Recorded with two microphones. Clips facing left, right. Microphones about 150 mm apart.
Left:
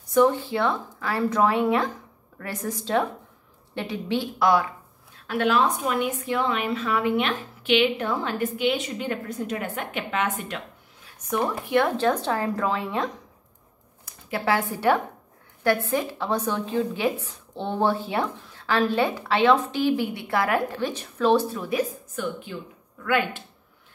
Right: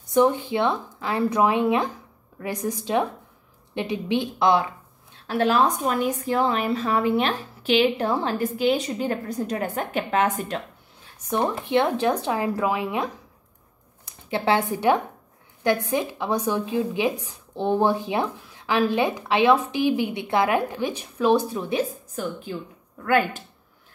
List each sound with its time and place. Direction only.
0.1 s a woman's voice: 20° right (ahead or behind); by 10.4 s 40° right (ahead or behind)
11.2 s a woman's voice: 25° right (ahead or behind)
14.0 s a woman's voice: 25° right (ahead or behind)
23.0 s a woman's voice: 40° right (ahead or behind)